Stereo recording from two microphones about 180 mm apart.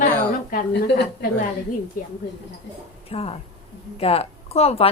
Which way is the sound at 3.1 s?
35° left (ahead or behind).